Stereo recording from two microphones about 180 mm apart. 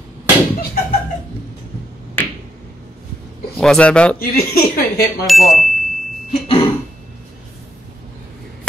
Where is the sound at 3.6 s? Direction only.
5° left (ahead or behind).